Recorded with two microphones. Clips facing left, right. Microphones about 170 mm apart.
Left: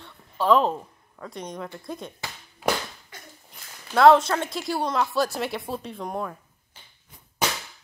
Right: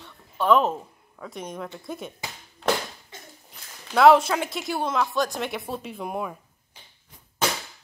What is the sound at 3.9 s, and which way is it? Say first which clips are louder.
A woman's voice: even; 5° right (ahead or behind).